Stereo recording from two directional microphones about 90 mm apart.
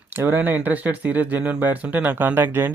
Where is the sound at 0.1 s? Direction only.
20° right (ahead or behind).